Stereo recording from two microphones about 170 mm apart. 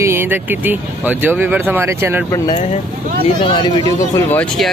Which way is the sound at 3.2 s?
30° left (ahead or behind).